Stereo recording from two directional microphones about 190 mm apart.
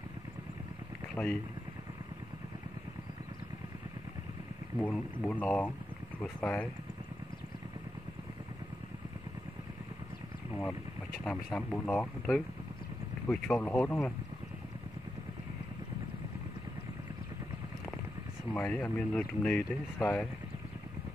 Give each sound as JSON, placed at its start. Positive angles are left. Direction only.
{"t": 1.1, "sound": "speech", "side_deg": 10}
{"t": 4.7, "sound": "speech", "side_deg": 5}
{"t": 11.2, "sound": "speech", "side_deg": 5}
{"t": 18.5, "sound": "speech", "side_deg": 15}